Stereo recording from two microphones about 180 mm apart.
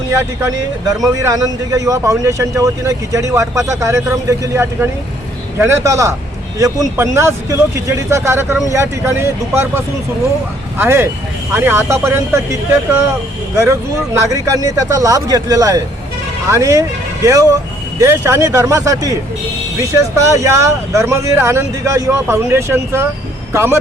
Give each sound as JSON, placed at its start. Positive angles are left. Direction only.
{"t": 0.1, "sound": "a man's voice", "side_deg": -15}
{"t": 13.6, "sound": "a man's voice", "side_deg": -15}
{"t": 18.0, "sound": "a man's voice", "side_deg": -15}